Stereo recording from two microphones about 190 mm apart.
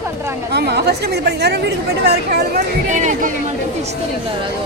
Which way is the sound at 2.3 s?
45° right (ahead or behind).